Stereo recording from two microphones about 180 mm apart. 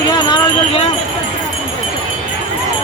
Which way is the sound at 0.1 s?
25° left (ahead or behind).